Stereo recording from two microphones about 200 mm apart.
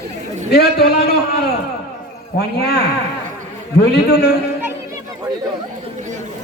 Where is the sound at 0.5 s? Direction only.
50° left (ahead or behind).